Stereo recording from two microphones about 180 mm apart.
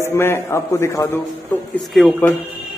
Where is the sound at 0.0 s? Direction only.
15° left (ahead or behind).